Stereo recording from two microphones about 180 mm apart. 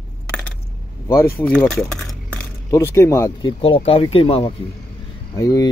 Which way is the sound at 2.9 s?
15° left (ahead or behind).